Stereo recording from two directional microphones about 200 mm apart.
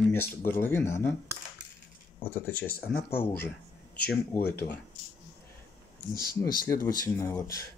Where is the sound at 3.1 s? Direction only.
10° left (ahead or behind).